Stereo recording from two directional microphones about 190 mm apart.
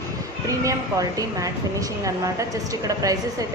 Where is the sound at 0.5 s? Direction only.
15° right (ahead or behind).